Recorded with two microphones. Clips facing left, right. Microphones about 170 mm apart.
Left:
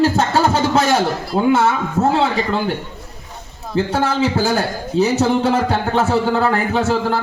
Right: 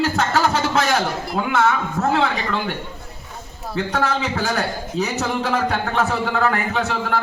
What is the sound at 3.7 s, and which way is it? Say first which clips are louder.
A man's voice: left 4 dB; 30° left (ahead or behind).